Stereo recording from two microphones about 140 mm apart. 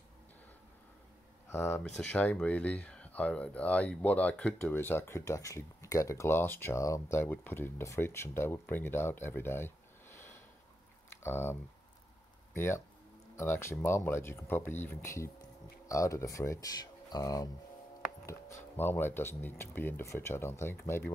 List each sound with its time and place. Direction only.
1.5 s speech: 20° left (ahead or behind)
1.8 s speech: 10° left (ahead or behind)
12.5 s speech: 20° left (ahead or behind)